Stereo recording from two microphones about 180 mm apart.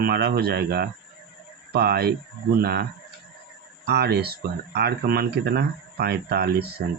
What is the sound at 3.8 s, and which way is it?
Speech, 65° right (ahead or behind).